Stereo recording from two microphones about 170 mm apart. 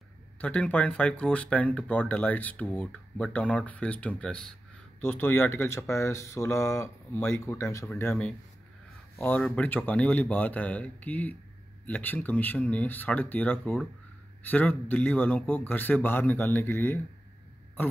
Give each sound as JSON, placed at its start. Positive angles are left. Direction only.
{"t": 0.4, "sound": "speech", "side_deg": 10}